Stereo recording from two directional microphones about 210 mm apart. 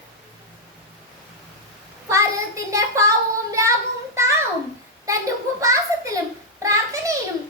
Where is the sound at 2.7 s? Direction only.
15° right (ahead or behind).